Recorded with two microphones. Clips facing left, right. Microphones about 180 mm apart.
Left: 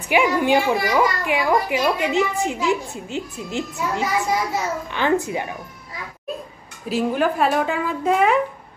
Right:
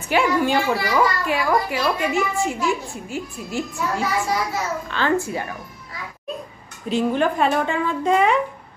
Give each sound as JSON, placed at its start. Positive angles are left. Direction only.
{"t": 0.1, "sound": "a woman's voice", "side_deg": 15}
{"t": 6.9, "sound": "a woman's voice", "side_deg": 5}